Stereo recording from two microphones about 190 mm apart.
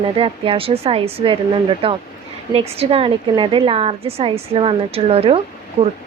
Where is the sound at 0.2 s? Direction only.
30° right (ahead or behind).